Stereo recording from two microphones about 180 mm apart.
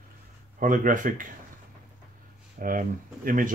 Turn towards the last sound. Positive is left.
turn(degrees=-50)  # may be behind; listen again after turning